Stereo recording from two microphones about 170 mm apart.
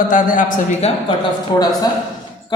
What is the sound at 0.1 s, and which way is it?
Speech, 50° left (ahead or behind).